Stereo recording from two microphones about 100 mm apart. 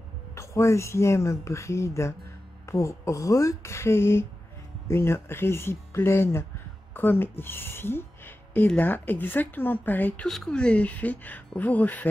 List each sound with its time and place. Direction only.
0.3 s speech: 30° left (ahead or behind)
10.2 s speech: 5° left (ahead or behind)